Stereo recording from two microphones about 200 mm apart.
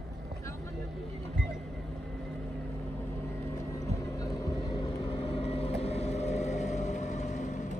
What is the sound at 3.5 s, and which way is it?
Vehicle, 15° left (ahead or behind).